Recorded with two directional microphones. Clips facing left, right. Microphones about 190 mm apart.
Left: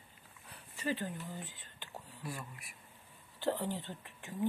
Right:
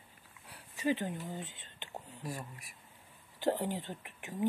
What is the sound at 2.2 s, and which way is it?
Speech, 35° right (ahead or behind).